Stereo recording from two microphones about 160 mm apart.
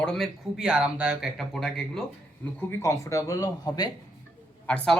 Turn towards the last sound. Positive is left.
turn(degrees=5)  # may be behind; listen again after turning